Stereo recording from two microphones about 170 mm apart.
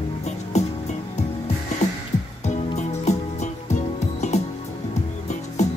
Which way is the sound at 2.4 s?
40° left (ahead or behind).